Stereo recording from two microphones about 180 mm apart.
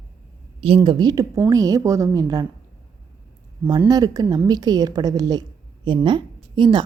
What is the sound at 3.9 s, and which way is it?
A woman's voice, 20° right (ahead or behind).